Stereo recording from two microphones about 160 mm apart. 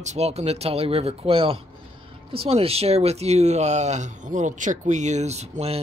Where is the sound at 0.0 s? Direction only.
45° right (ahead or behind).